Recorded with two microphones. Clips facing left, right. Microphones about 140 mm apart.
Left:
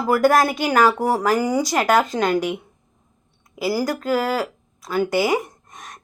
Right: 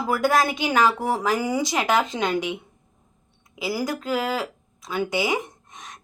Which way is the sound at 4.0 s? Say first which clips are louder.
Left 4 dB; 40° left (ahead or behind).